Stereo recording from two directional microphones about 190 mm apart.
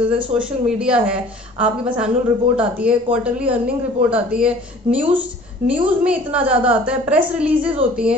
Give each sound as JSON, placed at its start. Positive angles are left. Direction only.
{"t": 0.3, "sound": "a woman's voice", "side_deg": -5}